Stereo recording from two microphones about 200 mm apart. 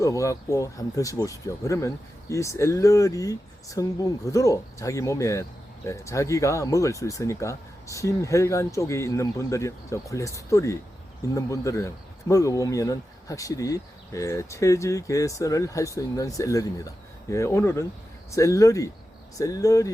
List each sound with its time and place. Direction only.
0.0 s speech: 15° left (ahead or behind)